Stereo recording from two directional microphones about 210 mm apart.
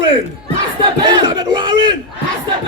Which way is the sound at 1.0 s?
20° right (ahead or behind).